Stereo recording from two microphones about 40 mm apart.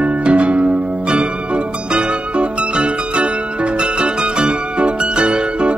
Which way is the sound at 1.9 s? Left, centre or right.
Right.